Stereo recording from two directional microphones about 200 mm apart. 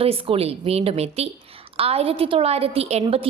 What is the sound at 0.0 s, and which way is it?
A woman's voice, 30° right (ahead or behind).